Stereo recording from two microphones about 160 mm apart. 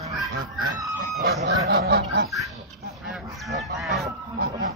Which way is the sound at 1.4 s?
90° right.